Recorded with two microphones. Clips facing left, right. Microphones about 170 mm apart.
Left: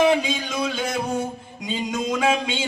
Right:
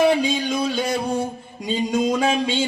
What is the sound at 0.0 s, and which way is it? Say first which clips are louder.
Music: right 1 dB; 30° right (ahead or behind).